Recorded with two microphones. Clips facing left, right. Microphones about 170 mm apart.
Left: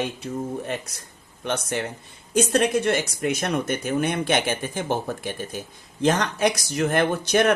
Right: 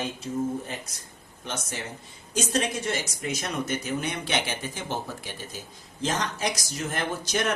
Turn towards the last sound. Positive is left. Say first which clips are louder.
# left 8 dB
turn(degrees=60)  # may be behind; listen again after turning